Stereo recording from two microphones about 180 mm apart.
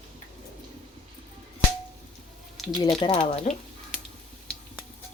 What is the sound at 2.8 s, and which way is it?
Speech, 30° left (ahead or behind).